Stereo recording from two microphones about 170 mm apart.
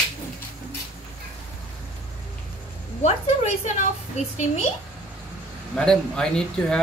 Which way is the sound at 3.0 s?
40° left (ahead or behind).